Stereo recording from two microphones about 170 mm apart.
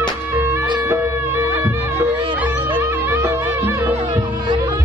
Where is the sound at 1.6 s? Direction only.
10° right (ahead or behind).